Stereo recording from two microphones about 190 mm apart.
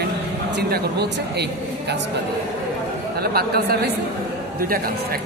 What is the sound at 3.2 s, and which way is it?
Speech, 55° right (ahead or behind).